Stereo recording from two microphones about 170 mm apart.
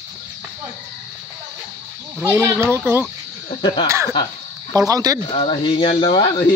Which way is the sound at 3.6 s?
30° left (ahead or behind).